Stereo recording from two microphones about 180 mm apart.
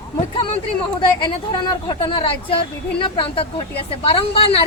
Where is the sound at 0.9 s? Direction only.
25° left (ahead or behind).